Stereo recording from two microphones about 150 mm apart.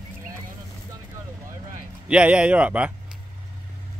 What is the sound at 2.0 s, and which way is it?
Speech, 10° right (ahead or behind).